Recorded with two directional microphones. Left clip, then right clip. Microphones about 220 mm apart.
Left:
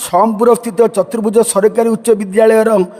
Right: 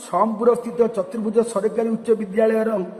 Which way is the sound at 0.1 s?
55° left (ahead or behind).